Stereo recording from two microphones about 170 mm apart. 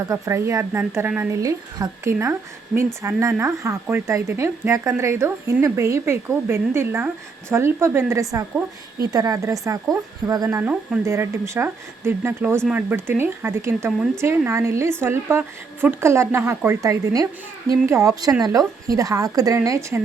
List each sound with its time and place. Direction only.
0.1 s a woman's voice: 15° right (ahead or behind)